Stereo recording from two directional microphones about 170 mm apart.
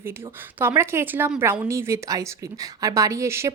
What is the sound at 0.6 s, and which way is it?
Speech, 15° right (ahead or behind).